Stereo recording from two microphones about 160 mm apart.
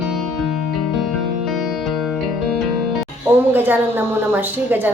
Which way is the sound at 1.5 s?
Centre (ahead or behind).